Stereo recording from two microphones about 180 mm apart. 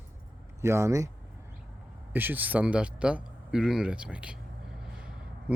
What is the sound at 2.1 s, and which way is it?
Speech, 10° right (ahead or behind).